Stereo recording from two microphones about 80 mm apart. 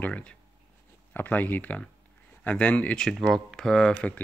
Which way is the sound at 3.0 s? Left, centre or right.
Centre.